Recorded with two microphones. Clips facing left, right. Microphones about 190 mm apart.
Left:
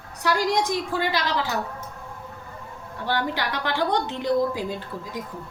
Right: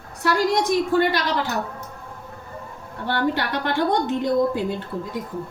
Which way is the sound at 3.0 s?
55° right (ahead or behind).